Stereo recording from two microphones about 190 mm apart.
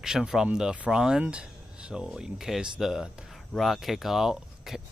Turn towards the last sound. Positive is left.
turn(degrees=0)  # may be behind; listen again after turning